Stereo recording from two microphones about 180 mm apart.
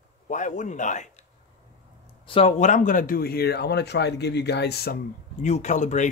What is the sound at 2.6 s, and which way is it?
Speech, 45° left (ahead or behind).